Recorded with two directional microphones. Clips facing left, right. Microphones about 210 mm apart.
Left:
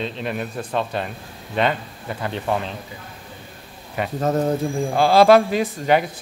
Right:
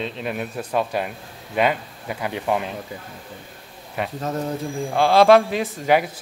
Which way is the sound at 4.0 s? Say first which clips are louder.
Left 5 dB; centre (ahead or behind).